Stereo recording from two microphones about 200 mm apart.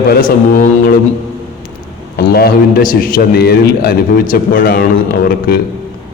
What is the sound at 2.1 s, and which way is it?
A man's voice, 50° left (ahead or behind).